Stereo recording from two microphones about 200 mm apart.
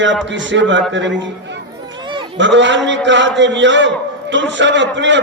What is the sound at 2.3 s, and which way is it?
A man's voice, 65° right (ahead or behind).